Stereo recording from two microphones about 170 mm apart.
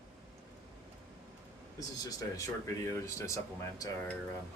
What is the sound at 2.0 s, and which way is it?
Speech, 20° left (ahead or behind).